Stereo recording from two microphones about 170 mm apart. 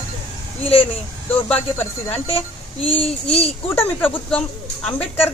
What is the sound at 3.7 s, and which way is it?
Speech, 10° left (ahead or behind).